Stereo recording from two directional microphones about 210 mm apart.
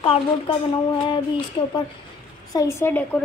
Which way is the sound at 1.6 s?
25° left (ahead or behind).